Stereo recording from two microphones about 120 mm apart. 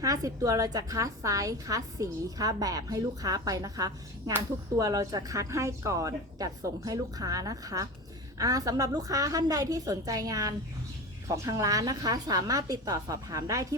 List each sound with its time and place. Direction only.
0.0 s a woman's voice: 30° right (ahead or behind)